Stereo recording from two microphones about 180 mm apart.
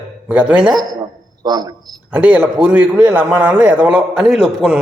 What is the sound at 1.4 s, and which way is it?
Speech, 20° right (ahead or behind).